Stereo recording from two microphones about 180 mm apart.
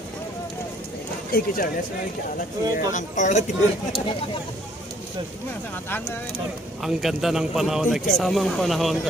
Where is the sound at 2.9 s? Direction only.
45° left (ahead or behind).